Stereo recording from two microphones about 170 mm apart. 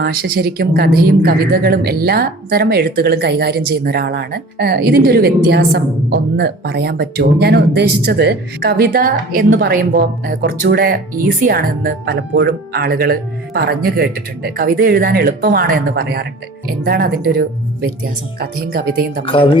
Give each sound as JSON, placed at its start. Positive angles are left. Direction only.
{"t": 0.0, "sound": "speech", "side_deg": -65}
{"t": 9.5, "sound": "speech", "side_deg": -70}
{"t": 19.2, "sound": "speech", "side_deg": 30}